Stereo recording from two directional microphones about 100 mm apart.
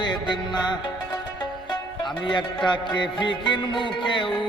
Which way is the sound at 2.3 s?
50° left (ahead or behind).